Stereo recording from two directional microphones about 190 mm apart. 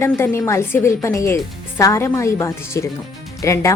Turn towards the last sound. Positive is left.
turn(degrees=15)  # may be behind; listen again after turning